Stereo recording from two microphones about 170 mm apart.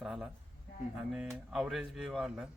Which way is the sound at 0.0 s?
5° right (ahead or behind).